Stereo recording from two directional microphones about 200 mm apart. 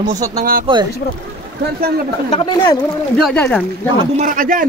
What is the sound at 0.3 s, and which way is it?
Speech, 45° right (ahead or behind).